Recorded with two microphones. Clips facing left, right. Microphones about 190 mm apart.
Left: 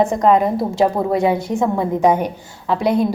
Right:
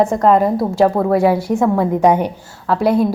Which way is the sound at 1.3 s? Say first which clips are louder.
Right 3 dB; 10° right (ahead or behind).